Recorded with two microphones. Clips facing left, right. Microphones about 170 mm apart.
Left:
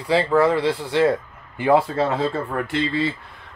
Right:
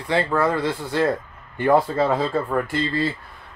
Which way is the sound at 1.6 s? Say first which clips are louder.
Even; 10° left (ahead or behind).